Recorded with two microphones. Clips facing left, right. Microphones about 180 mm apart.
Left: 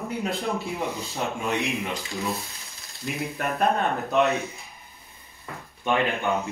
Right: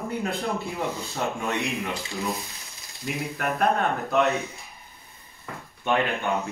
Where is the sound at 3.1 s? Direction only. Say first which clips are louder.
Even; centre (ahead or behind).